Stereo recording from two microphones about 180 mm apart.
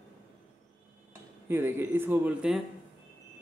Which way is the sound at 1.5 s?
15° right (ahead or behind).